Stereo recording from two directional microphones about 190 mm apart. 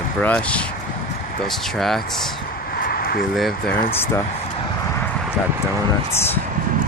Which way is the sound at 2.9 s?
50° left (ahead or behind).